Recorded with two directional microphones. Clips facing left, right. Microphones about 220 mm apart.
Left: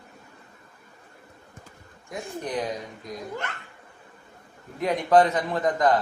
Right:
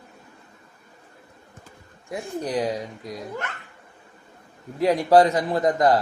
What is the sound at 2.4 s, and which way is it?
Speech, 30° right (ahead or behind).